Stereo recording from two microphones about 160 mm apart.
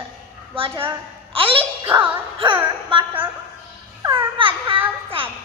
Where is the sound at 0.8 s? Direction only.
35° right (ahead or behind).